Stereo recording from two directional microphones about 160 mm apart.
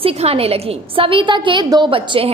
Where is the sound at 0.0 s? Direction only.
35° right (ahead or behind).